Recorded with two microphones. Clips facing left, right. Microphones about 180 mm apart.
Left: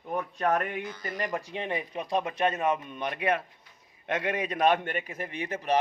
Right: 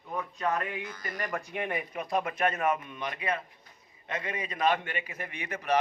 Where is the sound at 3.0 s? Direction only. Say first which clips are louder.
Left 5 dB; 65° left (ahead or behind).